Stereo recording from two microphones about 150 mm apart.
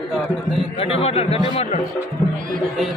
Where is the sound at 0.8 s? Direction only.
45° left (ahead or behind).